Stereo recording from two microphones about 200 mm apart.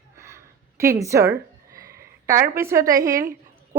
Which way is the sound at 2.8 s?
45° right (ahead or behind).